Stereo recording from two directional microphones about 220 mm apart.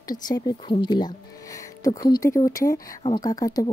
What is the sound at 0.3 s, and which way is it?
A woman's voice, 20° left (ahead or behind).